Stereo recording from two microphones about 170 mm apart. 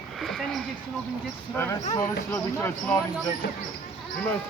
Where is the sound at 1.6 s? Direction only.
15° left (ahead or behind).